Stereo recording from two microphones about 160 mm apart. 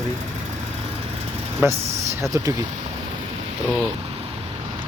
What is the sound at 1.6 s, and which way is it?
Speech, 15° right (ahead or behind).